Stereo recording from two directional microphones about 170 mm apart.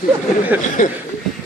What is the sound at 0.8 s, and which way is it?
Speech, 50° left (ahead or behind).